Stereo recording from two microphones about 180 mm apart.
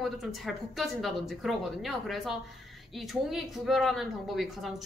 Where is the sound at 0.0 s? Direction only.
Centre (ahead or behind).